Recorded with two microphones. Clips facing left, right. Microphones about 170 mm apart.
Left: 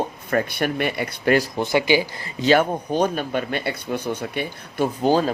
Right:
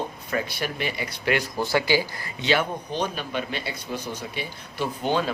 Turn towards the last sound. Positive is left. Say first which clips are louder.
# left 6 dB
turn(degrees=40)  # may be behind; listen again after turning